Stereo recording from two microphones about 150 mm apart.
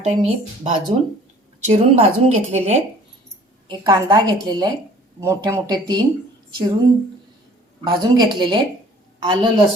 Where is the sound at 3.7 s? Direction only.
30° right (ahead or behind).